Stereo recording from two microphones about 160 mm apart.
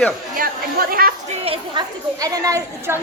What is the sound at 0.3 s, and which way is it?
Chatter, 65° right (ahead or behind).